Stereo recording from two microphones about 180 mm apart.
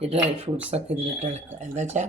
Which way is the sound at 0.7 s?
35° right (ahead or behind).